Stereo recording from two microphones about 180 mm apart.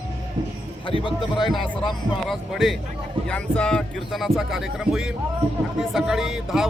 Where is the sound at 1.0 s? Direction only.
25° left (ahead or behind).